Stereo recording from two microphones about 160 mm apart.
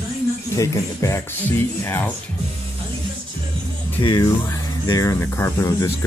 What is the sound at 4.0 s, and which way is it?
Speech, 25° left (ahead or behind).